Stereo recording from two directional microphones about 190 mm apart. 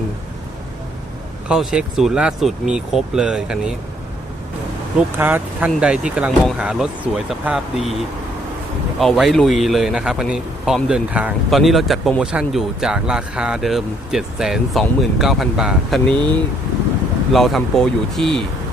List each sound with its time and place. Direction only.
1.5 s speech: 5° right (ahead or behind)
4.9 s speech: 10° right (ahead or behind)
9.0 s speech: centre (ahead or behind)
16.1 s speech: 25° right (ahead or behind)
17.3 s speech: centre (ahead or behind)